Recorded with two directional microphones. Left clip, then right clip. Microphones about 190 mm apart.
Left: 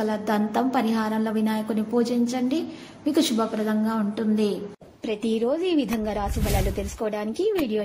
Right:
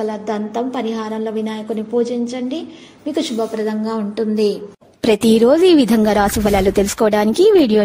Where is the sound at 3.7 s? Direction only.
5° right (ahead or behind).